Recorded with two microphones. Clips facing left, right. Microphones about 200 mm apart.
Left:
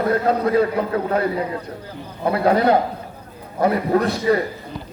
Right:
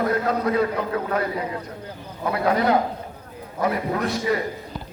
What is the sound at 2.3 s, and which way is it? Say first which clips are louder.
A man's voice: left 4 dB; 30° left (ahead or behind).